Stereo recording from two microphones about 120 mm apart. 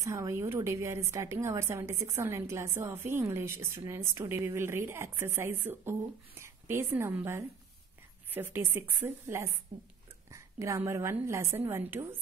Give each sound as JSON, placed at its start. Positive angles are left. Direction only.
{"t": 0.0, "sound": "a woman's voice", "side_deg": -25}
{"t": 9.7, "sound": "speech", "side_deg": -85}
{"t": 10.3, "sound": "a sound", "side_deg": -25}
{"t": 10.8, "sound": "a woman's voice", "side_deg": -20}